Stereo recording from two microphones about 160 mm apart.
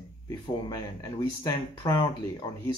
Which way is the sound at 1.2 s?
30° left (ahead or behind).